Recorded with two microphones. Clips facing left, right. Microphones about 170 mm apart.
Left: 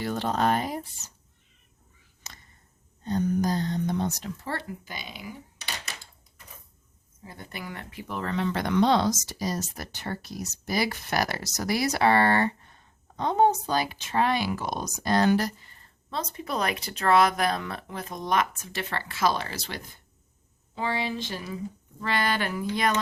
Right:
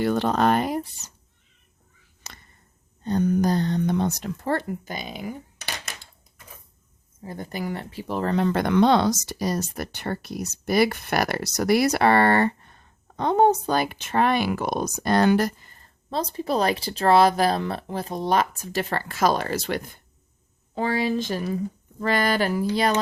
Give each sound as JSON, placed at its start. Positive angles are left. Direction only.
{"t": 0.0, "sound": "speech", "side_deg": -65}
{"t": 3.0, "sound": "speech", "side_deg": -65}
{"t": 7.3, "sound": "speech", "side_deg": -40}